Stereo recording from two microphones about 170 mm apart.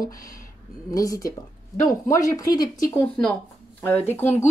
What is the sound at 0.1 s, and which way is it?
Speech, 20° left (ahead or behind).